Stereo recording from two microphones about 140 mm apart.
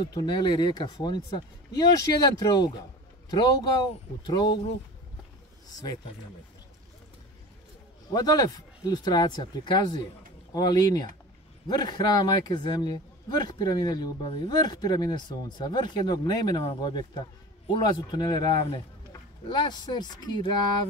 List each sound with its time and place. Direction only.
0.0 s speech: 30° left (ahead or behind)
8.1 s speech: 30° left (ahead or behind)